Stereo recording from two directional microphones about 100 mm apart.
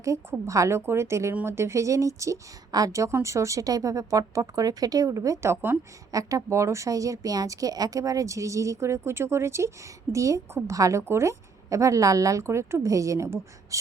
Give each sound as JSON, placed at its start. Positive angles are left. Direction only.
{"t": 0.0, "sound": "a woman's voice", "side_deg": -30}